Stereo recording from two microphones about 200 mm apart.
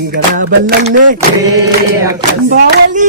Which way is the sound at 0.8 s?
40° right (ahead or behind).